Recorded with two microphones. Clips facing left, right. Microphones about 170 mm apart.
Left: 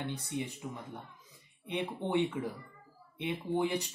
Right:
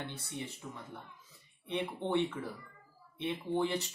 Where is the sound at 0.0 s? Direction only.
15° left (ahead or behind).